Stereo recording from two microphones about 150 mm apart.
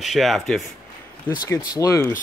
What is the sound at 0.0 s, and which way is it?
Speech, centre (ahead or behind).